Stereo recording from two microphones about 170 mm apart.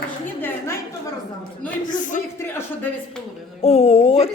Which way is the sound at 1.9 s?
50° left (ahead or behind).